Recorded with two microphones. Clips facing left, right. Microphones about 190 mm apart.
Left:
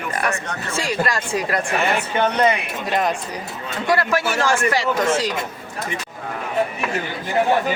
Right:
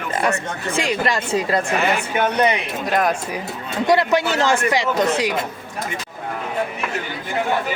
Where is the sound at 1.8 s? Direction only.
10° right (ahead or behind).